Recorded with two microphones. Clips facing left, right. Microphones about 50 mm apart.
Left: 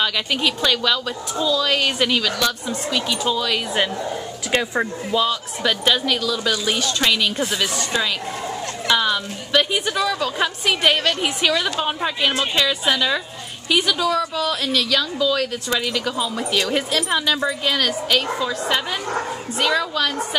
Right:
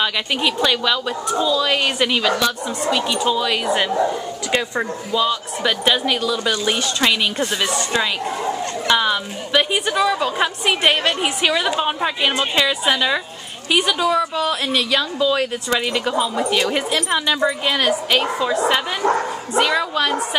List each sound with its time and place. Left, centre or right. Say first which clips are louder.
0.0 s a woman's voice: right 1 dB; centre
4.5 s a woman's voice: left 1 dB; centre